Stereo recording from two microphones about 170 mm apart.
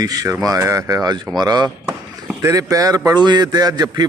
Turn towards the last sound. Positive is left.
turn(degrees=-25)  # may be behind; listen again after turning